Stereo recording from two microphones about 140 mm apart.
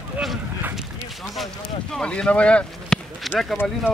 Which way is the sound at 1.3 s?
Centre (ahead or behind).